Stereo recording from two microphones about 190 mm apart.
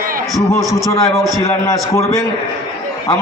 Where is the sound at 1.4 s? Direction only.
15° left (ahead or behind).